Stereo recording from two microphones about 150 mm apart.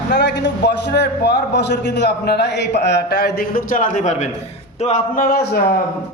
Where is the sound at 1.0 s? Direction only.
90° left; by 5.0 s 50° left (ahead or behind).